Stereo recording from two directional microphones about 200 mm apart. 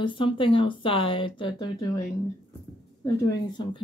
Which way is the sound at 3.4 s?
20° left (ahead or behind).